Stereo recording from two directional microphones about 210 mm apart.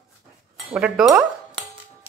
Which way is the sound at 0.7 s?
5° right (ahead or behind).